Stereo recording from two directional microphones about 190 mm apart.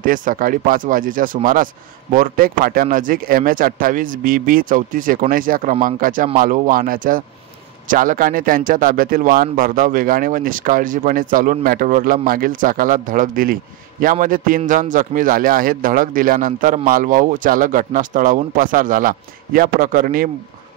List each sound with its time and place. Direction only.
0.0 s speech: 45° right (ahead or behind)